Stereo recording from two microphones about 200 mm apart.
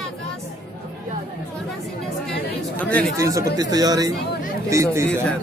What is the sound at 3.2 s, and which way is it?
Speech, 15° right (ahead or behind).